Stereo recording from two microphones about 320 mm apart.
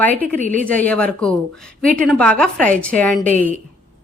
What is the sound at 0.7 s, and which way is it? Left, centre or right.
A woman's voice, centre.